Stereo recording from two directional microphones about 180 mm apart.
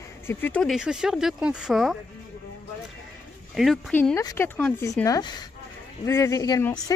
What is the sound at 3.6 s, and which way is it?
Speech, centre (ahead or behind).